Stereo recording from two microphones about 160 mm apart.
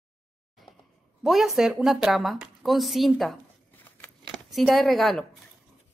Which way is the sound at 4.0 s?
Centre (ahead or behind).